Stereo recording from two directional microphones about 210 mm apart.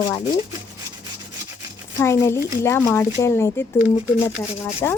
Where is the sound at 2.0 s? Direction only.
15° left (ahead or behind).